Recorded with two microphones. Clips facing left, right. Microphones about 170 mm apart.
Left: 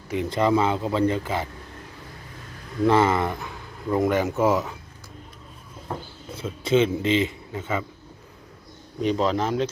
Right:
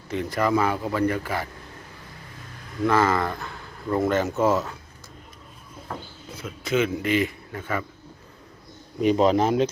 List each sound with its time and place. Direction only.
0.3 s speech: 25° left (ahead or behind)
2.8 s speech: 25° left (ahead or behind)
6.3 s a man's voice: 25° left (ahead or behind)
9.0 s a man's voice: 15° right (ahead or behind)